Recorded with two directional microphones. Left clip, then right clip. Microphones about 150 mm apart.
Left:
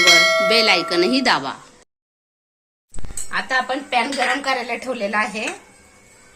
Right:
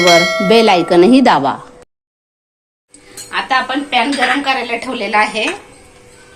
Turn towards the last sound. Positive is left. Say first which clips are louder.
# right 7 dB
turn(degrees=70)  # may be behind; listen again after turning